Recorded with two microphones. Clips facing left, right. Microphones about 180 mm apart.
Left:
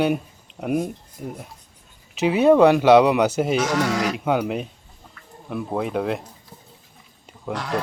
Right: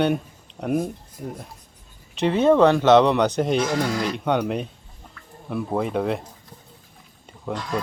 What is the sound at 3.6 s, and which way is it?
Speech, 75° left (ahead or behind).